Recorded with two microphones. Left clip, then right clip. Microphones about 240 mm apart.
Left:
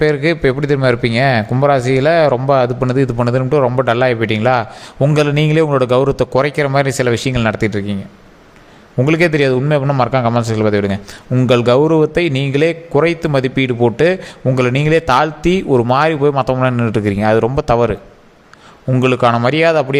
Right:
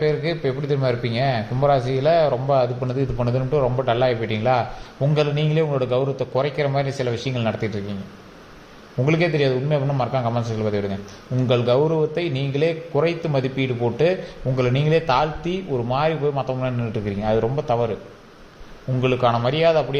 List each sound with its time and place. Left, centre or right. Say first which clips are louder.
0.0 s a man's voice: left 8 dB; left
9.0 s a man's voice: left 7 dB; left
18.9 s speech: left 7 dB; left